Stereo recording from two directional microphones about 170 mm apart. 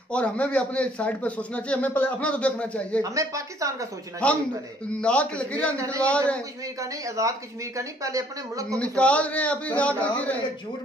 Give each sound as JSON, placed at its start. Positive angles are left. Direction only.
{"t": 0.1, "sound": "a man's voice", "side_deg": 5}
{"t": 3.0, "sound": "a woman's voice", "side_deg": -20}
{"t": 4.2, "sound": "a man's voice", "side_deg": 5}
{"t": 6.8, "sound": "a woman's voice", "side_deg": -20}
{"t": 8.7, "sound": "a man's voice", "side_deg": 5}